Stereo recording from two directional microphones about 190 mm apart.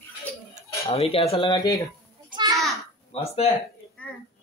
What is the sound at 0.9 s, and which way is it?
Speech, 30° left (ahead or behind).